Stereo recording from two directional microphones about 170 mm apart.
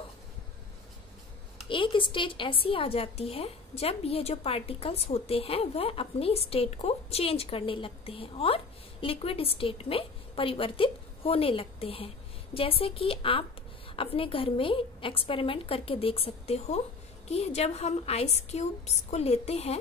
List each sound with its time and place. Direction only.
1.7 s a woman's voice: 30° left (ahead or behind)